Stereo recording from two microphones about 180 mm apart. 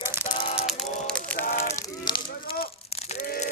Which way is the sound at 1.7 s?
25° left (ahead or behind).